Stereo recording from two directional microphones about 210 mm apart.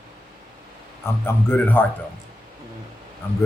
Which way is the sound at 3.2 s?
10° left (ahead or behind).